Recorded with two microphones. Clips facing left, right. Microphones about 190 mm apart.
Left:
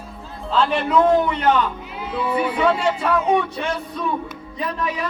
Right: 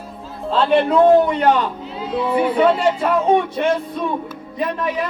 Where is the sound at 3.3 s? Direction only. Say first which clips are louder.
Right 4 dB; 50° right (ahead or behind).